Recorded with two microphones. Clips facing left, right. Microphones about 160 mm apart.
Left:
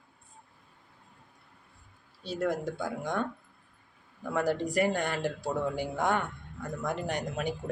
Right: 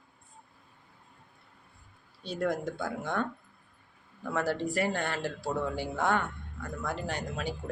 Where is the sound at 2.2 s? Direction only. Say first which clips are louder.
Even; 5° left (ahead or behind).